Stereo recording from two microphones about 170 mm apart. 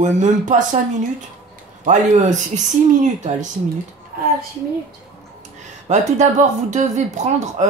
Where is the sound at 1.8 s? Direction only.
45° right (ahead or behind).